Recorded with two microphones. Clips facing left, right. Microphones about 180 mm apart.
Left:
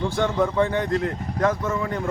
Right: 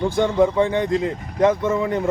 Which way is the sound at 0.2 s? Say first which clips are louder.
Right 4 dB; 15° right (ahead or behind).